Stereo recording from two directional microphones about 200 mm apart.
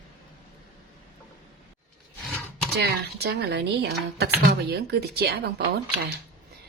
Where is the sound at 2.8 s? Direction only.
55° right (ahead or behind).